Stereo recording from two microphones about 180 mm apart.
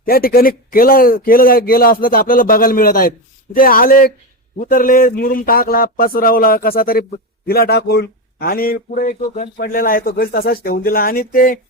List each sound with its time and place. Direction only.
0.0 s a man's voice: 55° left (ahead or behind)